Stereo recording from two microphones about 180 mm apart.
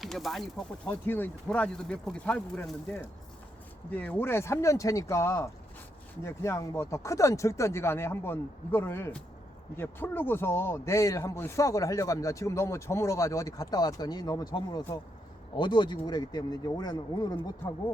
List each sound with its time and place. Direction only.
0.0 s speech: centre (ahead or behind)
0.9 s a man's voice: 10° left (ahead or behind)
4.0 s a man's voice: 10° left (ahead or behind)